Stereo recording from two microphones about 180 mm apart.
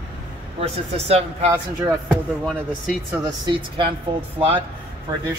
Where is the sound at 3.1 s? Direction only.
25° right (ahead or behind).